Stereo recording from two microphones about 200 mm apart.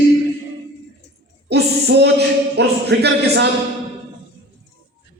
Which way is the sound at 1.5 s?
55° right (ahead or behind).